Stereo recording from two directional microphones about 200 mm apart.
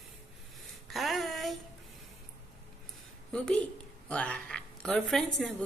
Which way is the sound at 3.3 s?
5° left (ahead or behind).